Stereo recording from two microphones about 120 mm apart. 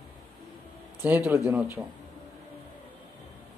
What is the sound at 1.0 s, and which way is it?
Speech, 15° right (ahead or behind).